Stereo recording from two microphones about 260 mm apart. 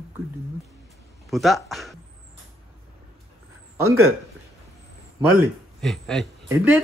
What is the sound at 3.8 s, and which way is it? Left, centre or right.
Speech, right.